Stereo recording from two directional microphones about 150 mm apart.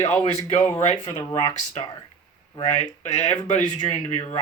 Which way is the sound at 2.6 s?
50° left (ahead or behind).